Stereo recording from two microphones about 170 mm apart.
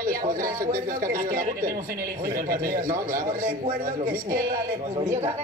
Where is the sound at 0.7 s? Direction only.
55° right (ahead or behind).